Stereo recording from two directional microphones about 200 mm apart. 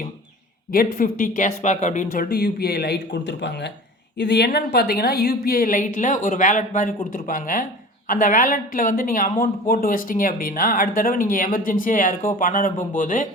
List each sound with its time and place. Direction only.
0.7 s a woman's voice: 45° left (ahead or behind)